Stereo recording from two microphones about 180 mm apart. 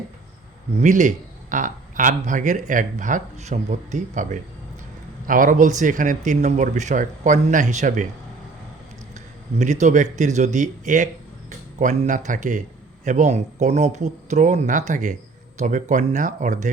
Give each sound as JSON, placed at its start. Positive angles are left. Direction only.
{"t": 0.8, "sound": "speech", "side_deg": -45}
{"t": 9.1, "sound": "speech", "side_deg": -40}